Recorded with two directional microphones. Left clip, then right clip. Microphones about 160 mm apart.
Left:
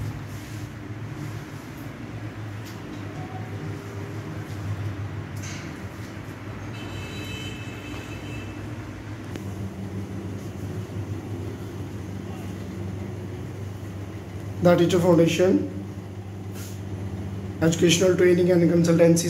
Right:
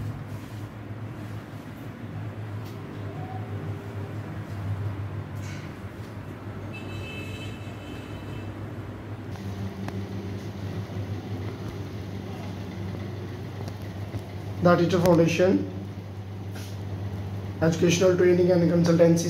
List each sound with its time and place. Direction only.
14.6 s a man's voice: 15° left (ahead or behind)
17.6 s speech: 15° left (ahead or behind)